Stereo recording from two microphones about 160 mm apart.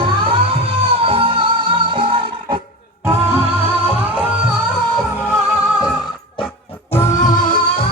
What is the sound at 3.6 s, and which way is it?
Music, 35° right (ahead or behind).